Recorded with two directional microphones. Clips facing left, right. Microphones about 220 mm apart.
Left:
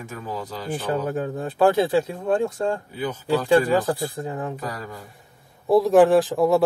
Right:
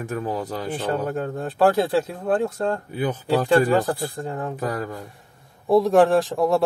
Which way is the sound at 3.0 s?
55° right (ahead or behind).